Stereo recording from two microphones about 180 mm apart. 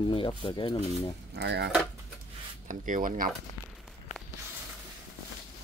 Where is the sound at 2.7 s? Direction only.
45° right (ahead or behind).